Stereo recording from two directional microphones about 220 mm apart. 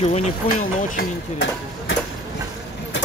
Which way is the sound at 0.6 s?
45° left (ahead or behind).